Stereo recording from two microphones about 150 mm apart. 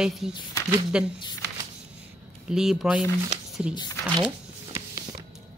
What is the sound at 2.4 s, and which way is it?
Speech, 5° right (ahead or behind).